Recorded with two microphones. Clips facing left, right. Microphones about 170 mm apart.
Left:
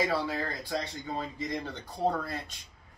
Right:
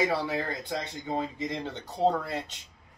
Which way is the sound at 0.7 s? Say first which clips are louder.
Right 1 dB; 20° right (ahead or behind).